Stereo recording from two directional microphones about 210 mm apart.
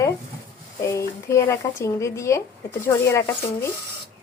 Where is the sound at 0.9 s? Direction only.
15° left (ahead or behind).